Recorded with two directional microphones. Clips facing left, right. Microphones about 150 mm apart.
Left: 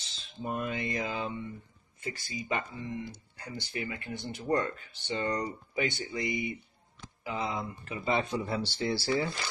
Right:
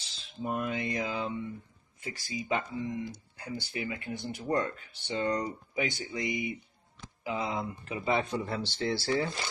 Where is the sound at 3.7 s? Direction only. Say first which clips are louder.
Left 1 dB; 5° right (ahead or behind).